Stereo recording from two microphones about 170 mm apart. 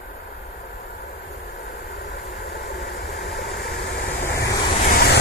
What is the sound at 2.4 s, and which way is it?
Vehicle, 75° left (ahead or behind).